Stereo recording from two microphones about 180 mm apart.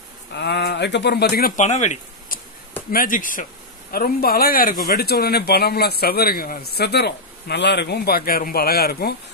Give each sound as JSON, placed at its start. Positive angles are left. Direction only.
{"t": 0.3, "sound": "speech", "side_deg": 70}
{"t": 1.6, "sound": "speech", "side_deg": 40}